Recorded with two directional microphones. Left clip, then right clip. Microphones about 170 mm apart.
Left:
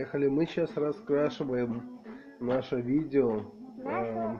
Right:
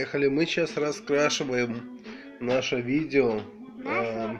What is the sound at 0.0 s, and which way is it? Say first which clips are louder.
Speech: right 4 dB; 20° right (ahead or behind).